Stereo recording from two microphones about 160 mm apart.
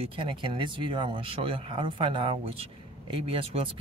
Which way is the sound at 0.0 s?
35° right (ahead or behind).